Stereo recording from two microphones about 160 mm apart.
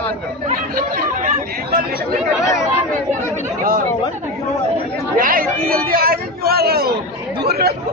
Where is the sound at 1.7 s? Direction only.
65° right (ahead or behind).